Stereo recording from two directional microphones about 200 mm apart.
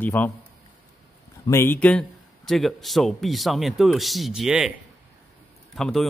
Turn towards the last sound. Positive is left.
turn(degrees=0)  # may be behind; listen again after turning